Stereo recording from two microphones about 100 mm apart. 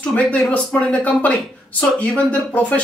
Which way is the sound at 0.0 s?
15° left (ahead or behind).